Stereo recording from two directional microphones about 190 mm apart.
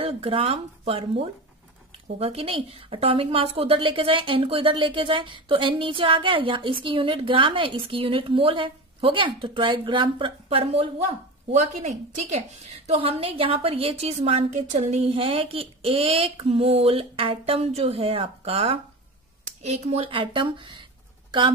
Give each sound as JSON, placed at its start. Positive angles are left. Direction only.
{"t": 0.0, "sound": "a woman's voice", "side_deg": -30}